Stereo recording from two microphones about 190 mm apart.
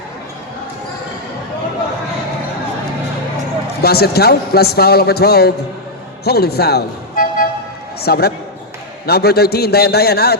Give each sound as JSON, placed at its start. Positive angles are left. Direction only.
{"t": 3.8, "sound": "a man's voice", "side_deg": 55}